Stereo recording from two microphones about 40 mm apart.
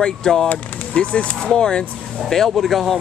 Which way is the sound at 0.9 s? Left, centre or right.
Left.